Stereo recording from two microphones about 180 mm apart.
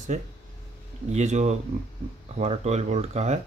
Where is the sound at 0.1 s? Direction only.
45° right (ahead or behind).